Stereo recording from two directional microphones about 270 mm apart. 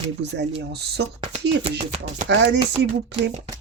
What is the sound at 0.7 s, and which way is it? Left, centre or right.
Speech, right.